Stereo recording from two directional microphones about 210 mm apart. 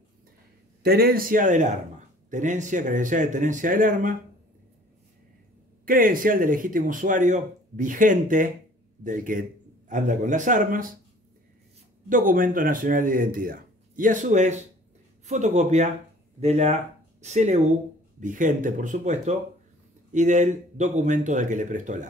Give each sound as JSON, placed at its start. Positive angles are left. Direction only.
{"t": 0.8, "sound": "speech", "side_deg": -45}
{"t": 5.9, "sound": "a man's voice", "side_deg": -40}
{"t": 12.1, "sound": "speech", "side_deg": -40}